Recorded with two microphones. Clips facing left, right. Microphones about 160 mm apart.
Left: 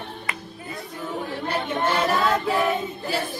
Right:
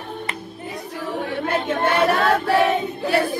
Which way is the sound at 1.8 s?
60° right (ahead or behind).